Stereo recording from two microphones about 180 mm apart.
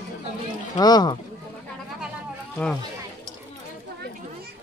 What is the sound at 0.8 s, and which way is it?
Speech, 25° left (ahead or behind).